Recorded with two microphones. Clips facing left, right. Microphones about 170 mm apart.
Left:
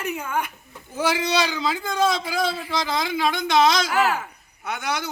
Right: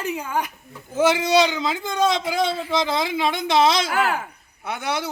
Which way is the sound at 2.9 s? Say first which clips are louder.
Right 1 dB; centre (ahead or behind).